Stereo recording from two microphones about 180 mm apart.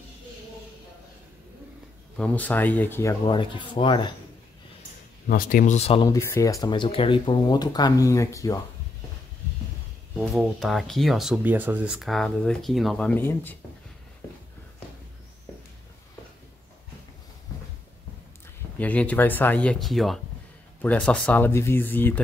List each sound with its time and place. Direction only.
2.1 s speech: 10° left (ahead or behind); by 4.1 s 25° left (ahead or behind)
5.3 s speech: 50° left (ahead or behind)
5.8 s speech: 35° left (ahead or behind)
6.0 s speech: 20° left (ahead or behind)
10.1 s speech: centre (ahead or behind)
18.8 s speech: 10° left (ahead or behind)